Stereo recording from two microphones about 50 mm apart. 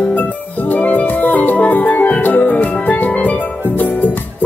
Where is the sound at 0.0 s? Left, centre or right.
Left.